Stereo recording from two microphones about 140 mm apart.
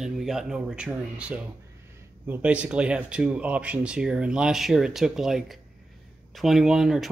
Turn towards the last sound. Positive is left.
turn(degrees=-5)  # may be behind; listen again after turning